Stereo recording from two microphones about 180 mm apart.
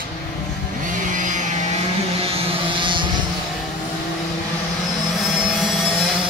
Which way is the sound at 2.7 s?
25° right (ahead or behind).